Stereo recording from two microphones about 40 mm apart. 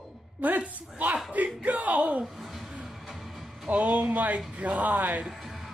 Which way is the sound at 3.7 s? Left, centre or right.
Right.